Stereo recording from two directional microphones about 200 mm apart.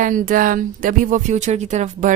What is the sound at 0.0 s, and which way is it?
Speech, 40° right (ahead or behind).